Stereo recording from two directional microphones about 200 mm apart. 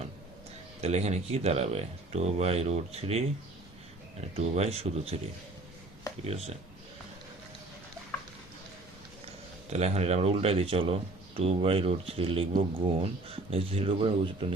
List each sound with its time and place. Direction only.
0.8 s speech: 30° right (ahead or behind)
4.4 s speech: 30° right (ahead or behind)
6.2 s speech: 30° right (ahead or behind)
9.6 s speech: 30° right (ahead or behind)